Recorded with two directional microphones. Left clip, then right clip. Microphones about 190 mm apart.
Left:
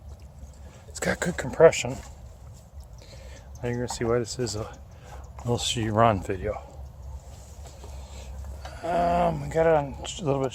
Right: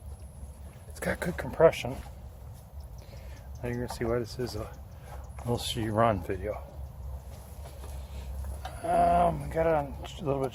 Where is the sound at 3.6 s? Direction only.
45° left (ahead or behind).